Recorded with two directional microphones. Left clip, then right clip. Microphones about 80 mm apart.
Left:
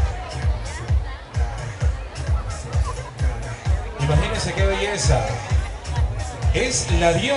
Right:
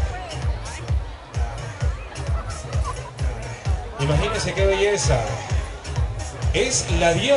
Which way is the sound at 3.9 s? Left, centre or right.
Centre.